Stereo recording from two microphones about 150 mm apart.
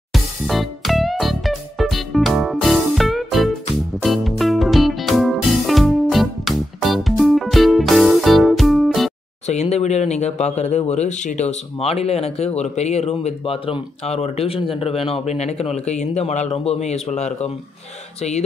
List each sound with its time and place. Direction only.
0.1 s music: centre (ahead or behind)
9.5 s speech: 45° left (ahead or behind)